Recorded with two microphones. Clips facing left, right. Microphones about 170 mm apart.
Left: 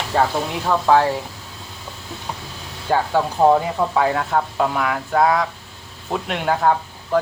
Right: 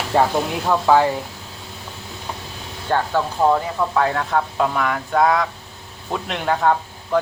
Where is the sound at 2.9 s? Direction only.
10° left (ahead or behind).